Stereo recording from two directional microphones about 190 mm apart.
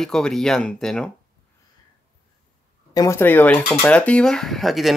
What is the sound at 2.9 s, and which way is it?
Speech, 15° left (ahead or behind).